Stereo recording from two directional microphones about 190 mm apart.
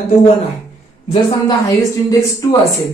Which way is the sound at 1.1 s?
25° left (ahead or behind).